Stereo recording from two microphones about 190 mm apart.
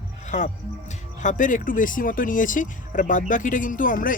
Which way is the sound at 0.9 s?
40° left (ahead or behind).